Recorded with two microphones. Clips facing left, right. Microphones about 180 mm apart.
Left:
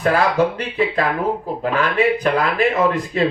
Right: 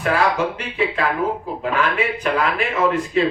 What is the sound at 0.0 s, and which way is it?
Speech, 35° left (ahead or behind).